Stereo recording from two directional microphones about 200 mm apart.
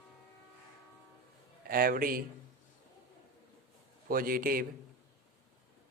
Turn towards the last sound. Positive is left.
turn(degrees=-45)  # may be behind; listen again after turning